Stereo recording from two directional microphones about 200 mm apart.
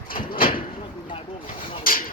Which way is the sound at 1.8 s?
45° left (ahead or behind).